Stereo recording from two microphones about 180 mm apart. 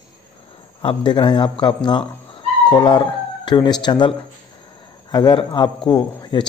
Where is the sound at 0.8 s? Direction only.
25° left (ahead or behind).